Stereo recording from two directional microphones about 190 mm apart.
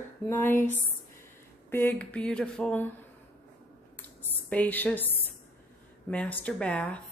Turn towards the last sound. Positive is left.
turn(degrees=5)  # may be behind; listen again after turning